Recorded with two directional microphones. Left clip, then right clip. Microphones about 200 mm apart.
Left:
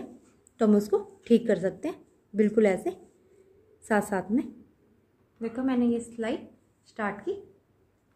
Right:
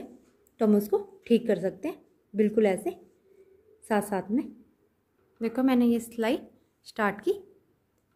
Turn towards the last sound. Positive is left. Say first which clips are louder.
# right 4 dB
turn(degrees=-55)  # may be behind; listen again after turning